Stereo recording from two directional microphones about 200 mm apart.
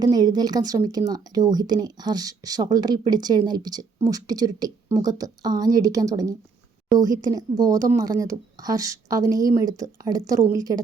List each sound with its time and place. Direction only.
0.0 s speech: 20° right (ahead or behind)